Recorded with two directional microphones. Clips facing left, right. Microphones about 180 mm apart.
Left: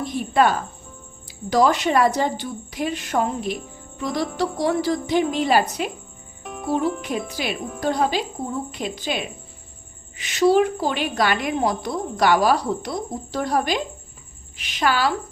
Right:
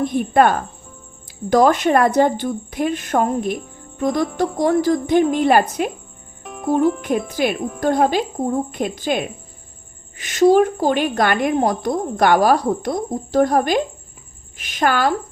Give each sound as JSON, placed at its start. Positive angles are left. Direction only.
{"t": 0.0, "sound": "a woman's voice", "side_deg": -55}
{"t": 6.4, "sound": "music", "side_deg": 0}
{"t": 7.3, "sound": "a woman's voice", "side_deg": -50}